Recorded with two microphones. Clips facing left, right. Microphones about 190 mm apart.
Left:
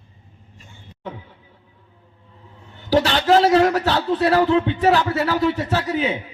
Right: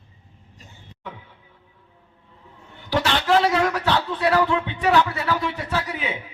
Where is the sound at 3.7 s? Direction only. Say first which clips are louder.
Left 4 dB; 30° left (ahead or behind).